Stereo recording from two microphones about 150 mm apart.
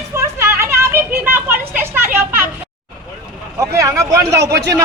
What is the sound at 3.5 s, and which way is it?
Speech, 20° right (ahead or behind).